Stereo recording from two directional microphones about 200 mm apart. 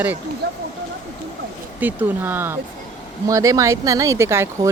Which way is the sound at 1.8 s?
10° right (ahead or behind).